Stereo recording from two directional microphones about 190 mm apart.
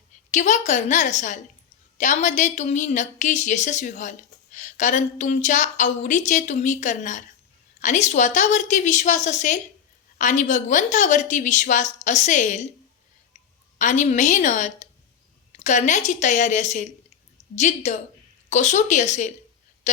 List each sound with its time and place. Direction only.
0.3 s speech: 40° left (ahead or behind)
13.7 s speech: 40° left (ahead or behind)